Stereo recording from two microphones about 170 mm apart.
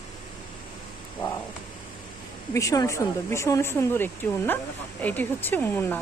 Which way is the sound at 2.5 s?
20° left (ahead or behind).